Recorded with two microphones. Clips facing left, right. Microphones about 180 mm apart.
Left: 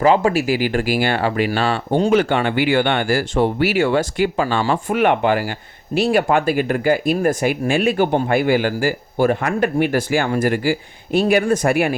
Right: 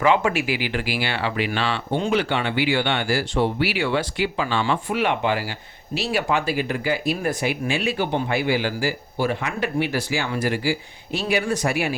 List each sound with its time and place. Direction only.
0.0 s speech: 35° left (ahead or behind); by 11.9 s 50° left (ahead or behind)